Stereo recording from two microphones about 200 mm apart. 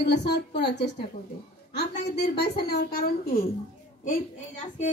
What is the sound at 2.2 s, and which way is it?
Speech, 55° left (ahead or behind).